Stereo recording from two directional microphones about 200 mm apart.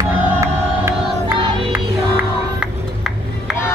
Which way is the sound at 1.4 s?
25° right (ahead or behind).